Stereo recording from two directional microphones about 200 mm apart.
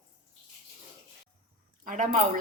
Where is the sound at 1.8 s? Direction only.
40° right (ahead or behind).